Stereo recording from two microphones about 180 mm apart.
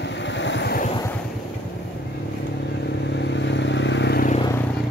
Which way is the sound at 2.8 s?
75° left (ahead or behind).